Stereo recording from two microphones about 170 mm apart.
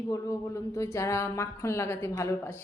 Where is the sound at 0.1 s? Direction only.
20° left (ahead or behind).